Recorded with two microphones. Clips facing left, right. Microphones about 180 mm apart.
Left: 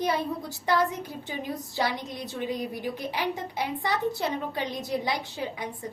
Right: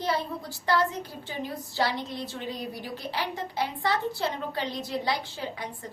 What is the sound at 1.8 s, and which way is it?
A woman's voice, 20° left (ahead or behind).